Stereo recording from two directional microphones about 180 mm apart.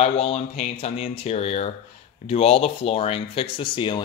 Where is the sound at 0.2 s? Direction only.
35° left (ahead or behind).